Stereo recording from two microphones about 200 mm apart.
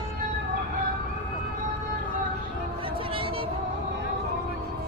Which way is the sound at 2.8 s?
25° right (ahead or behind).